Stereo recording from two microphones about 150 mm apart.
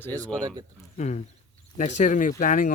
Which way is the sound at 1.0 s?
50° left (ahead or behind).